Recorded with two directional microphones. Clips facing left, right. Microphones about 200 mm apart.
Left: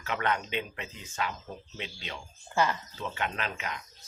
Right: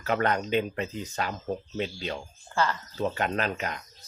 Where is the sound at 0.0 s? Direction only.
40° right (ahead or behind).